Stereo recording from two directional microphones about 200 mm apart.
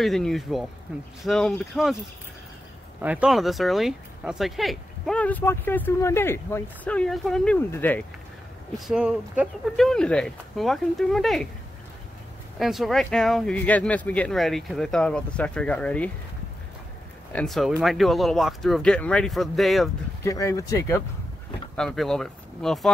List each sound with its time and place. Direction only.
0.0 s speech: centre (ahead or behind)
3.0 s speech: 5° right (ahead or behind); by 8.0 s 10° left (ahead or behind)
8.7 s speech: centre (ahead or behind)
12.5 s speech: centre (ahead or behind)
17.3 s speech: 5° left (ahead or behind)
20.2 s speech: 15° left (ahead or behind)
21.7 s speech: centre (ahead or behind)